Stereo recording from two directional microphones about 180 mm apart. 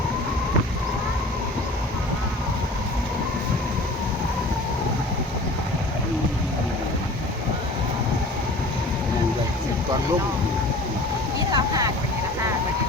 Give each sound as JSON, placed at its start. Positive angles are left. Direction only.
{"t": 11.5, "sound": "vehicle", "side_deg": -20}